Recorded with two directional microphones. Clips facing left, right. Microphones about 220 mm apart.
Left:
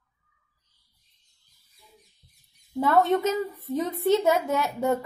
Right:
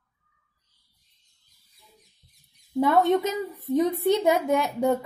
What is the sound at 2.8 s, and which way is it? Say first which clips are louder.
A woman's voice: right 1 dB; 15° right (ahead or behind).